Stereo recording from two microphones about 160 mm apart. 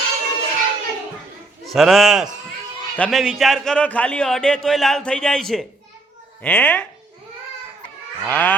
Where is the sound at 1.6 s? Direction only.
Centre (ahead or behind).